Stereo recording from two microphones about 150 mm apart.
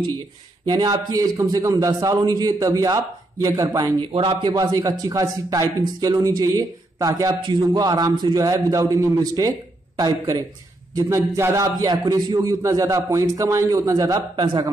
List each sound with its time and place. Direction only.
0.7 s a man's voice: 25° right (ahead or behind)
4.1 s a man's voice: 35° right (ahead or behind)